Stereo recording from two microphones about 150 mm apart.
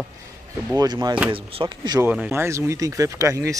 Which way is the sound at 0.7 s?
25° right (ahead or behind).